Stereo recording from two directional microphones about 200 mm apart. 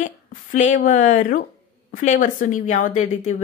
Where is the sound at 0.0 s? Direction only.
40° left (ahead or behind).